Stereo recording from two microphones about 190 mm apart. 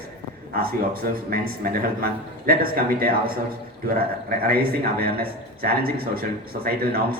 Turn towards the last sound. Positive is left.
turn(degrees=-50)  # may be behind; listen again after turning